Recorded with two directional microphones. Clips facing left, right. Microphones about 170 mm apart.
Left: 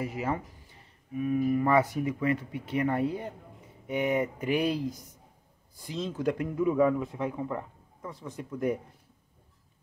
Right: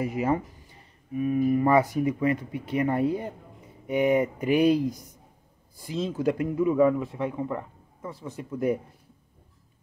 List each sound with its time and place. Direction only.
0.0 s speech: 15° right (ahead or behind)